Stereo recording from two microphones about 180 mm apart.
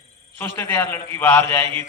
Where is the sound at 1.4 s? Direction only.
30° right (ahead or behind).